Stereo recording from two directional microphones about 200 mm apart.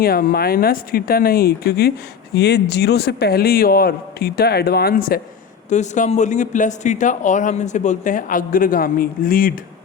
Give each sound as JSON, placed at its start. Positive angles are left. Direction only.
{"t": 0.0, "sound": "speech", "side_deg": 50}
{"t": 5.6, "sound": "speech", "side_deg": 35}